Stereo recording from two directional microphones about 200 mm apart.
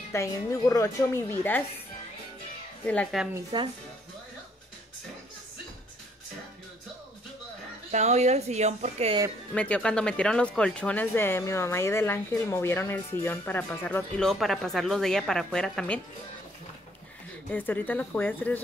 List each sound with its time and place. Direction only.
0.1 s speech: 15° left (ahead or behind)
2.8 s speech: 5° left (ahead or behind)
3.5 s speech: 25° right (ahead or behind)
7.9 s speech: 35° right (ahead or behind)
9.5 s speech: 5° left (ahead or behind)
17.5 s speech: 10° left (ahead or behind)